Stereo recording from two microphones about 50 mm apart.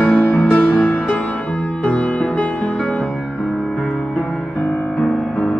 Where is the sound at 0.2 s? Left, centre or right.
Left.